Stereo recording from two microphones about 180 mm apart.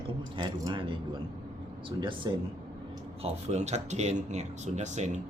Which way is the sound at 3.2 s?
40° right (ahead or behind).